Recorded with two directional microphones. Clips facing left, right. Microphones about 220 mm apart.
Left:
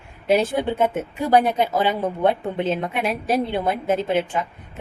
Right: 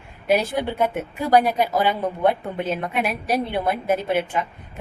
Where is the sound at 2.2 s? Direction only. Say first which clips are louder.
Left 1 dB; 20° left (ahead or behind).